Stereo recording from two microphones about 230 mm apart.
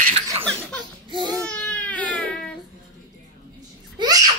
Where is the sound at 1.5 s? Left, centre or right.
Centre.